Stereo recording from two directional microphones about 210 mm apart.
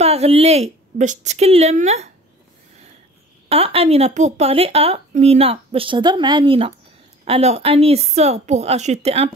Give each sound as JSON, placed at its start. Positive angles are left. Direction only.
{"t": 0.0, "sound": "a woman's voice", "side_deg": -30}
{"t": 3.4, "sound": "a woman's voice", "side_deg": -25}